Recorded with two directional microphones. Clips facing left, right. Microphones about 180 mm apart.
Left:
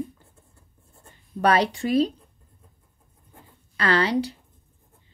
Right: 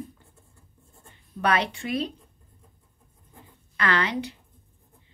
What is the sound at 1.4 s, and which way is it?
Speech, 35° left (ahead or behind).